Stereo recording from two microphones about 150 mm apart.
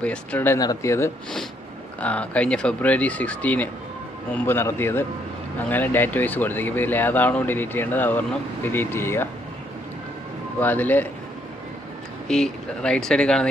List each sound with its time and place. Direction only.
0.0 s speech: 10° left (ahead or behind)
0.6 s speech: 20° left (ahead or behind)
10.6 s speech: 10° left (ahead or behind)
12.3 s speech: 5° left (ahead or behind)